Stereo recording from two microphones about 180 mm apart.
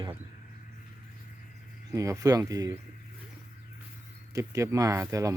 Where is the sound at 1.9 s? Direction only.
20° right (ahead or behind).